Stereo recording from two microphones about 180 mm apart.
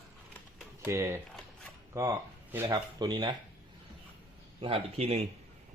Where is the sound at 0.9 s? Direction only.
15° right (ahead or behind).